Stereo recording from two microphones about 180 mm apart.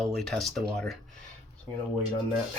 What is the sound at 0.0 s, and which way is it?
Speech, centre (ahead or behind).